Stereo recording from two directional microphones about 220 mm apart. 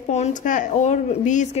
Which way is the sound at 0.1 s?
35° left (ahead or behind).